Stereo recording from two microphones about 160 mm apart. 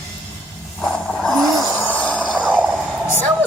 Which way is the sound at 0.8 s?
Centre (ahead or behind).